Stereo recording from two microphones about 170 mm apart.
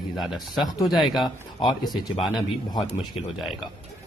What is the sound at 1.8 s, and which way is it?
Speech, 25° left (ahead or behind).